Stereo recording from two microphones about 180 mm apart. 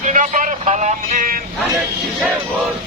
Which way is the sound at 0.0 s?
45° right (ahead or behind).